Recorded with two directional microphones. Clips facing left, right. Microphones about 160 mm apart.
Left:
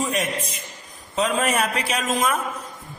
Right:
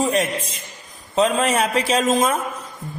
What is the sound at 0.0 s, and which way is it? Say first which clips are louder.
A man's voice: right 4 dB; 30° right (ahead or behind).